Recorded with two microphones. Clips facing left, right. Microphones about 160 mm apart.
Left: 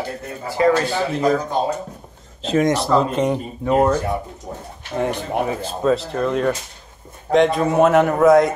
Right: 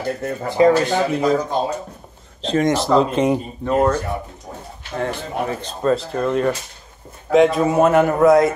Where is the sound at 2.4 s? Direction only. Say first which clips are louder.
Even; 5° left (ahead or behind).